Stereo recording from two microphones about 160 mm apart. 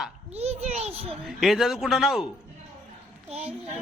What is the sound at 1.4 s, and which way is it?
Speech, centre (ahead or behind).